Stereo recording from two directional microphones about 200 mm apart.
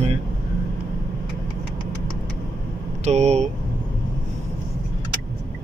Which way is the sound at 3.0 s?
35° right (ahead or behind).